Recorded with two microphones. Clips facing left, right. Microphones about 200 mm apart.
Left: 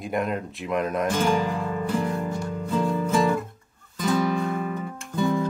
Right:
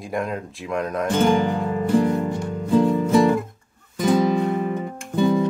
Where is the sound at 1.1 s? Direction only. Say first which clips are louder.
Right 8 dB; 30° right (ahead or behind).